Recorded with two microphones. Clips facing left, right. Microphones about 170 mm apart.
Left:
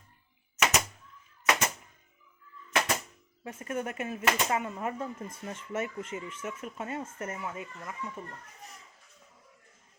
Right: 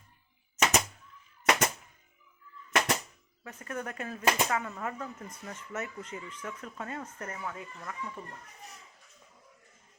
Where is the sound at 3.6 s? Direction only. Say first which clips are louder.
Left 3 dB; 25° left (ahead or behind).